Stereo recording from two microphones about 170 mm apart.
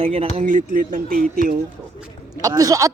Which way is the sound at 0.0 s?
40° right (ahead or behind).